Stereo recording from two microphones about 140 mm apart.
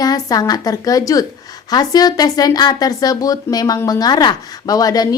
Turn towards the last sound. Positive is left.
turn(degrees=25)  # may be behind; listen again after turning